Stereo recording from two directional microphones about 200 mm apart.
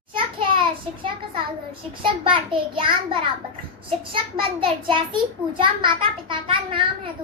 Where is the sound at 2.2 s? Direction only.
25° right (ahead or behind).